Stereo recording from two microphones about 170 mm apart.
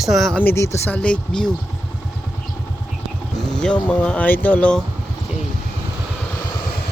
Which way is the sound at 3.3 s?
Centre (ahead or behind).